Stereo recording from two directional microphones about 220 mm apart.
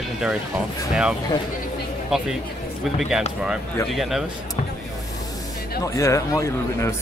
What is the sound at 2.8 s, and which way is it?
Speech, centre (ahead or behind).